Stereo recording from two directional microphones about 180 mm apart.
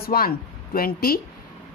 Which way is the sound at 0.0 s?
55° left (ahead or behind).